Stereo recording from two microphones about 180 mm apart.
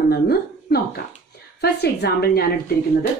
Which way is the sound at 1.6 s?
65° left (ahead or behind).